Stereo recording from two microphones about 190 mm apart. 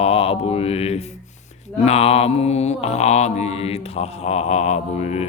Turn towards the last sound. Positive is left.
turn(degrees=35)  # may be behind; listen again after turning